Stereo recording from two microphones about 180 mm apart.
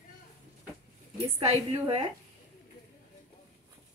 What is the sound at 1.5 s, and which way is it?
Speech, 30° right (ahead or behind).